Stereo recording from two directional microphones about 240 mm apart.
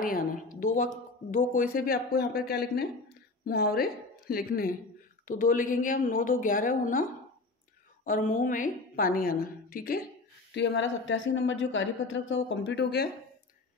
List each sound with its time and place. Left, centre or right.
0.0 s speech: left
10.5 s a woman's voice: left